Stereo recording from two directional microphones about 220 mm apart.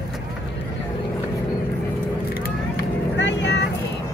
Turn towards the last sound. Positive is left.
turn(degrees=55)  # may be behind; listen again after turning